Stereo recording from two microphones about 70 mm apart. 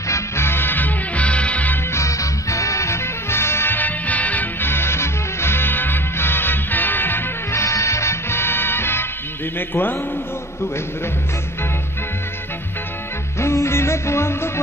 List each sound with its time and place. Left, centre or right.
0.1 s music: left
1.9 s music: left
7.5 s music: left
9.6 s a man's voice: left
13.4 s music: left